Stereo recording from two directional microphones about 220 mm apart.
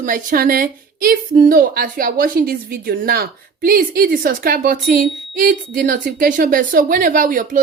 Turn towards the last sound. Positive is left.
turn(degrees=-40)  # may be behind; listen again after turning